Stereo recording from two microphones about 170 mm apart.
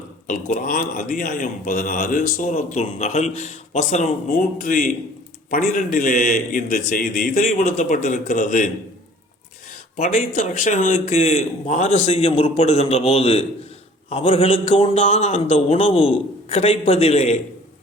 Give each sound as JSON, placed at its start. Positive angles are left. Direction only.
{"t": 0.3, "sound": "a man's voice", "side_deg": 50}
{"t": 10.0, "sound": "a man's voice", "side_deg": 50}